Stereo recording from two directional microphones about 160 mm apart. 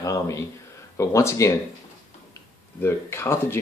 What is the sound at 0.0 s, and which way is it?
Speech, 20° left (ahead or behind).